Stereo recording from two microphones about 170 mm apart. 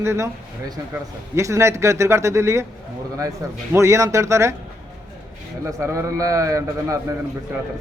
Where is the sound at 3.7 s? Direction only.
15° right (ahead or behind).